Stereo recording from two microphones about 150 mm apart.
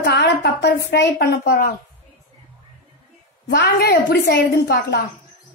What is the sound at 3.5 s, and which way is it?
A woman's voice, 90° left.